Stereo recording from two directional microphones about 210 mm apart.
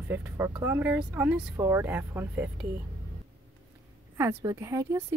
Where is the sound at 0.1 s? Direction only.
10° right (ahead or behind).